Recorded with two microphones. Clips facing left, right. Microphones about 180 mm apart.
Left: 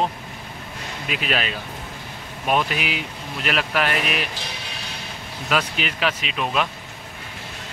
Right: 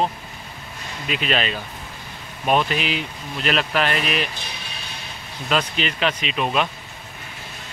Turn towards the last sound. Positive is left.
turn(degrees=0)  # may be behind; listen again after turning